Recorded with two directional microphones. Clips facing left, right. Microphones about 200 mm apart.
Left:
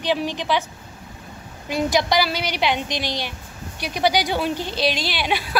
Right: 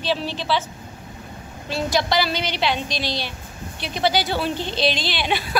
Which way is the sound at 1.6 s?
15° left (ahead or behind).